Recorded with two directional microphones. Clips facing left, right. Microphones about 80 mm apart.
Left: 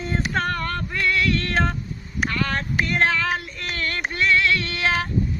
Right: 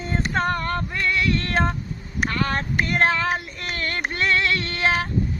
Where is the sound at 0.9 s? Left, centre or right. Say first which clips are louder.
Left 4 dB; centre.